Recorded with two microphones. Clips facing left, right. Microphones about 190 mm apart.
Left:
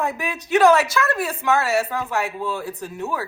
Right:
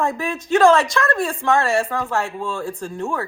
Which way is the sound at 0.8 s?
5° left (ahead or behind).